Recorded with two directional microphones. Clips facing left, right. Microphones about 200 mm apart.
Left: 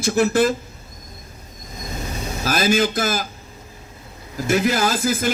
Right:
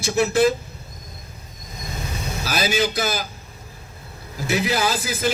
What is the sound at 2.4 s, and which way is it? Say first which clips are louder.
Speech: left 4 dB; 50° left (ahead or behind).